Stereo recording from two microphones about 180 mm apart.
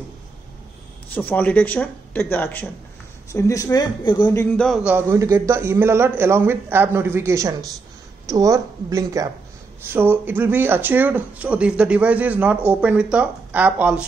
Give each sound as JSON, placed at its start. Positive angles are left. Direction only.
{"t": 1.1, "sound": "speech", "side_deg": 10}
{"t": 4.3, "sound": "speech", "side_deg": 15}
{"t": 4.6, "sound": "speech", "side_deg": -5}